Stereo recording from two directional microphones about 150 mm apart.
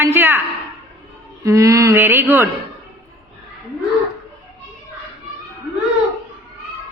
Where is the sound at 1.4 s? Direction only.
20° right (ahead or behind).